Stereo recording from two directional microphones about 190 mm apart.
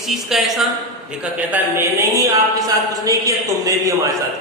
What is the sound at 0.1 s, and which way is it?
A woman's voice, centre (ahead or behind).